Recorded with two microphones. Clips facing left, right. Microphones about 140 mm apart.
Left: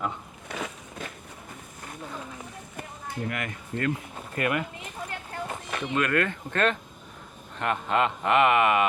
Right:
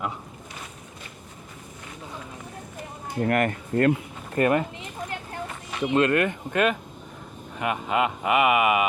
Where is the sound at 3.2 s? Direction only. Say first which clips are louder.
Right 13 dB; 50° right (ahead or behind).